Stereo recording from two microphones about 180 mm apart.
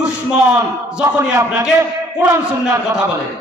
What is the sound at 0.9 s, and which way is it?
A man's voice, 10° right (ahead or behind).